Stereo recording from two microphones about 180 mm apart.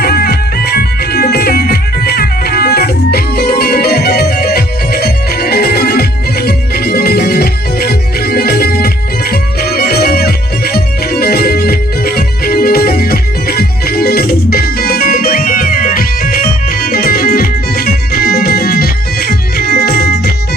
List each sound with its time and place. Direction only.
0.0 s music: 60° left (ahead or behind)